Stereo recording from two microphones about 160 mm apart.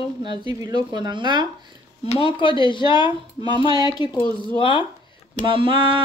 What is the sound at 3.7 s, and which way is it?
Speech, 25° left (ahead or behind).